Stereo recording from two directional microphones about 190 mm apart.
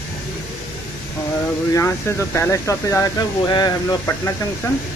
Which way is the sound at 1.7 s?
15° left (ahead or behind).